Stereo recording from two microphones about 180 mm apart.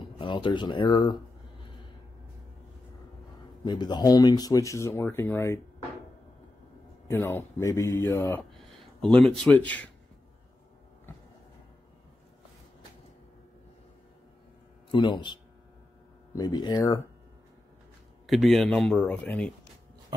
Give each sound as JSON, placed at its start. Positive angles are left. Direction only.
{"t": 0.2, "sound": "speech", "side_deg": 25}
{"t": 3.6, "sound": "speech", "side_deg": 25}
{"t": 7.1, "sound": "speech", "side_deg": 15}
{"t": 14.9, "sound": "speech", "side_deg": 25}
{"t": 16.3, "sound": "speech", "side_deg": 20}
{"t": 18.2, "sound": "speech", "side_deg": 0}